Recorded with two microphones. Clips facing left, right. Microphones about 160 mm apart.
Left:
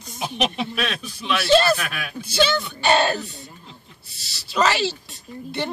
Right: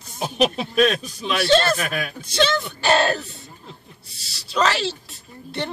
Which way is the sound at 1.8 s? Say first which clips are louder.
Right 5 dB; 40° right (ahead or behind).